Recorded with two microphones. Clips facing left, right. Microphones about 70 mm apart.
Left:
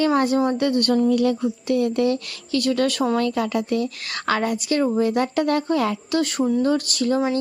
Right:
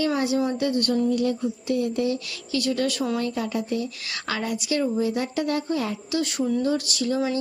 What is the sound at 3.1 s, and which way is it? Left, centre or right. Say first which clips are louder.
A woman's voice: left 5 dB; left.